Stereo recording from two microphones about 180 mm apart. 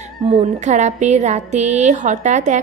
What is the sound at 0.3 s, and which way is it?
A woman's voice, 35° right (ahead or behind).